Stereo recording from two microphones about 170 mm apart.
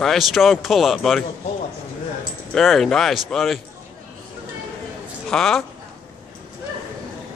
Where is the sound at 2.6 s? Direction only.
Centre (ahead or behind).